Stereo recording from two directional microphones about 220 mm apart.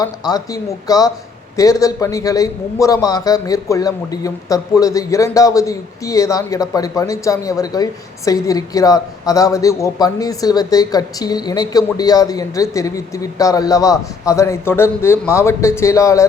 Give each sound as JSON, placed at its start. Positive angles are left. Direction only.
{"t": 0.0, "sound": "a man's voice", "side_deg": 15}